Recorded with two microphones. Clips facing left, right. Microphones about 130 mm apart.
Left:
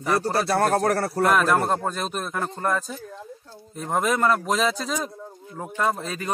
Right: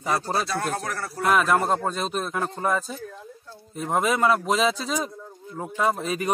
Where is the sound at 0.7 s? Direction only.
45° left (ahead or behind).